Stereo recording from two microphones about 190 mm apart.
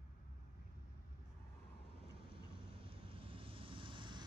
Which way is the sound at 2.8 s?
30° right (ahead or behind).